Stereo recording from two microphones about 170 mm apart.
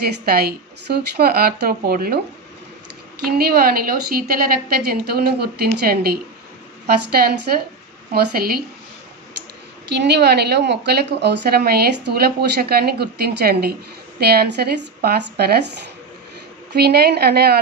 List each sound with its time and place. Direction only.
0.0 s speech: 65° right (ahead or behind)
3.3 s a woman's voice: 60° right (ahead or behind)
9.8 s a woman's voice: 80° right
16.7 s a woman's voice: 70° right (ahead or behind)